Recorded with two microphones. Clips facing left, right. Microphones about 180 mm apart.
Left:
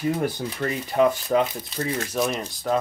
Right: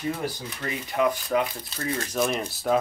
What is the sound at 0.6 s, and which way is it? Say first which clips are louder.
Speech: left 4 dB; 35° left (ahead or behind).